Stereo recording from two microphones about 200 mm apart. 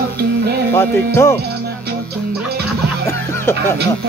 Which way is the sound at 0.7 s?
10° left (ahead or behind).